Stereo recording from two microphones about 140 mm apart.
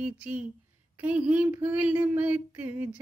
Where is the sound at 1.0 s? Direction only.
10° right (ahead or behind).